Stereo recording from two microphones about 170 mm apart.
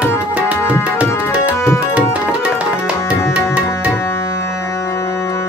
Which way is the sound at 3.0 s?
15° left (ahead or behind).